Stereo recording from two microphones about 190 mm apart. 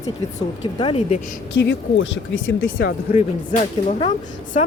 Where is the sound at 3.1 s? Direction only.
35° left (ahead or behind).